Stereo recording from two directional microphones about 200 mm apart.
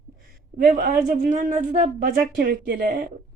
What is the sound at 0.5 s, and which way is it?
Speech, 45° right (ahead or behind).